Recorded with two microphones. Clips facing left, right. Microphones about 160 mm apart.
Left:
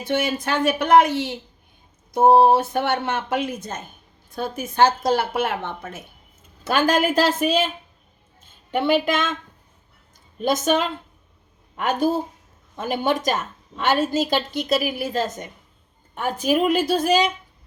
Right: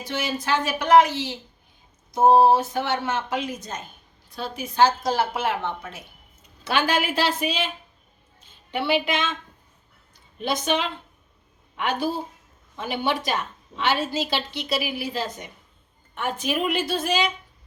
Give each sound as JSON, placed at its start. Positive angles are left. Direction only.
{"t": 0.0, "sound": "speech", "side_deg": 55}
{"t": 2.4, "sound": "a woman's voice", "side_deg": 60}
{"t": 8.7, "sound": "a woman's voice", "side_deg": 45}
{"t": 10.3, "sound": "a woman's voice", "side_deg": 45}